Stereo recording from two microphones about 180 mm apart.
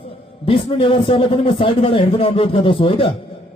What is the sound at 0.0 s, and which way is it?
A man's voice, 30° left (ahead or behind).